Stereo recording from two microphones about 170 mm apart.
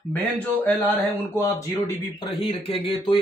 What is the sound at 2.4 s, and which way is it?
Speech, 35° left (ahead or behind).